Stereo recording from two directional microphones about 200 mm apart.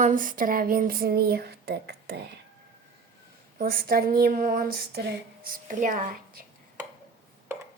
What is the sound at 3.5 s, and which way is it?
Speech, 45° right (ahead or behind).